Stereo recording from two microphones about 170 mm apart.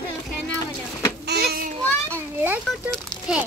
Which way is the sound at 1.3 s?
70° right (ahead or behind).